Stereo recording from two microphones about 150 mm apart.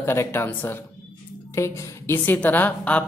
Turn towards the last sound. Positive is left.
turn(degrees=10)  # may be behind; listen again after turning